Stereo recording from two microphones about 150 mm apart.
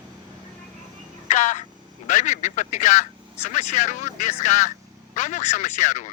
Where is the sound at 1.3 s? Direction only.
55° left (ahead or behind).